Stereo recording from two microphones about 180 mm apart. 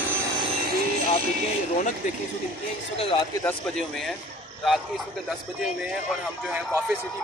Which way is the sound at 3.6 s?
Centre (ahead or behind).